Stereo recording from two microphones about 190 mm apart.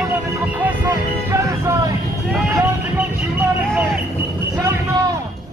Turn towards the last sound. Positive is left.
turn(degrees=-15)  # may be behind; listen again after turning